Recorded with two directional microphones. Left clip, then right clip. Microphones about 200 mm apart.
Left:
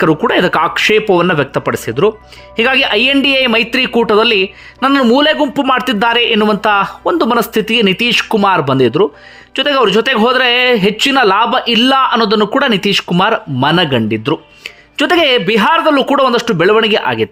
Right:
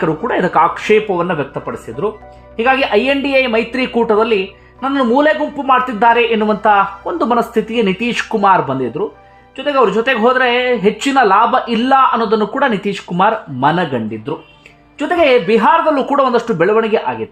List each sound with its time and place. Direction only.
0.0 s speech: 20° left (ahead or behind)